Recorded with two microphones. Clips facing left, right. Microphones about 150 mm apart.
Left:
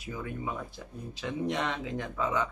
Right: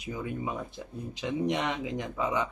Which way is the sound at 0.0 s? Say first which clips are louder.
Right 2 dB; 20° right (ahead or behind).